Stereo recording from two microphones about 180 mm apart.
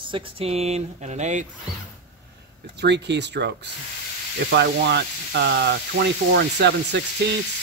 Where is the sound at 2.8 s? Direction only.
75° right (ahead or behind).